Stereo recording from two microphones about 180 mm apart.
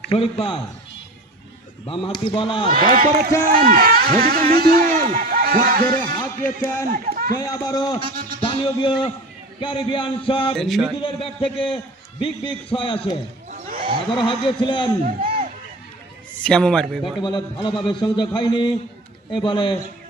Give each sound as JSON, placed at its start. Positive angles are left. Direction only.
{"t": 0.1, "sound": "a man's voice", "side_deg": 30}
{"t": 1.9, "sound": "a man's voice", "side_deg": 30}
{"t": 2.7, "sound": "a man's voice", "side_deg": -55}
{"t": 6.2, "sound": "speech", "side_deg": 15}
{"t": 6.9, "sound": "speech", "side_deg": -55}
{"t": 7.3, "sound": "a man's voice", "side_deg": 20}
{"t": 10.5, "sound": "a man's voice", "side_deg": 0}
{"t": 11.0, "sound": "a man's voice", "side_deg": 30}
{"t": 13.5, "sound": "a sound", "side_deg": -50}
{"t": 14.3, "sound": "a man's voice", "side_deg": 25}
{"t": 16.5, "sound": "a man's voice", "side_deg": 5}
{"t": 17.2, "sound": "a man's voice", "side_deg": 25}